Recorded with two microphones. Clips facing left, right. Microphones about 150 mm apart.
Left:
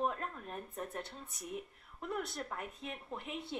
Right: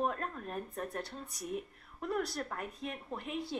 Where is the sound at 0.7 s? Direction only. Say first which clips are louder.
Right 3 dB; 25° left (ahead or behind).